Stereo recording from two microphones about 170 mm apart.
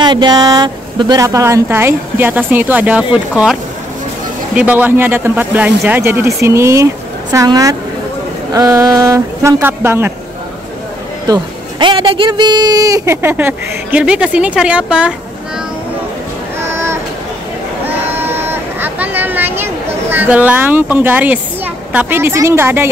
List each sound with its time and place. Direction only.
0.0 s speech: 25° right (ahead or behind); by 3.5 s 5° right (ahead or behind)
4.6 s a woman's voice: 10° right (ahead or behind)
11.2 s speech: 25° right (ahead or behind); by 15.1 s 5° right (ahead or behind)
16.5 s a sound: 15° right (ahead or behind)
20.1 s speech: 10° right (ahead or behind)